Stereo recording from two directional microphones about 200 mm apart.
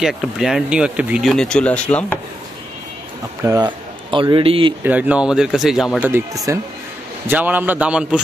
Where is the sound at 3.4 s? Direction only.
20° right (ahead or behind).